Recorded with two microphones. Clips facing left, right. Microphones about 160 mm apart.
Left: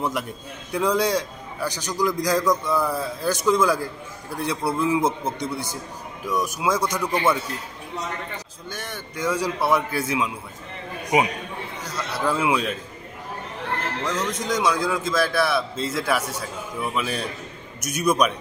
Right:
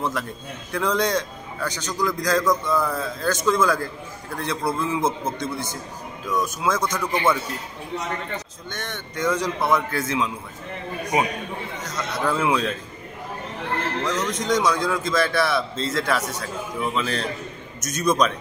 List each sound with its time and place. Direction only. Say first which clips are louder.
0.0 s a man's voice: even; 15° left (ahead or behind)
8.6 s a man's voice: right 1 dB; 5° left (ahead or behind)
12.0 s a man's voice: even; 5° left (ahead or behind)
14.4 s a man's voice: right 2 dB; 5° left (ahead or behind)